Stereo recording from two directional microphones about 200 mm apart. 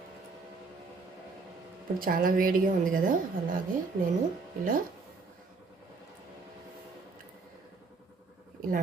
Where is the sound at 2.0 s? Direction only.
45° right (ahead or behind).